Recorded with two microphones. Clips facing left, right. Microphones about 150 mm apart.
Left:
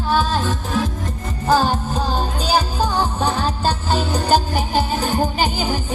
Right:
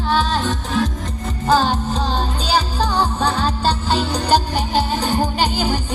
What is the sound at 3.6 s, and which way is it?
Music, 45° left (ahead or behind).